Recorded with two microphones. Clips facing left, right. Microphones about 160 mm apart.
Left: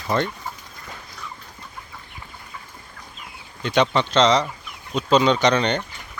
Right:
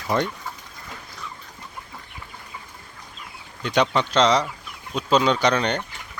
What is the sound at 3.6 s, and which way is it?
Speech, 5° right (ahead or behind).